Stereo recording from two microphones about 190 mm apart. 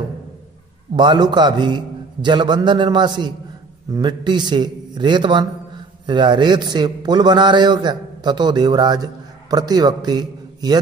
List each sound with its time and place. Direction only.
0.9 s a man's voice: 25° right (ahead or behind)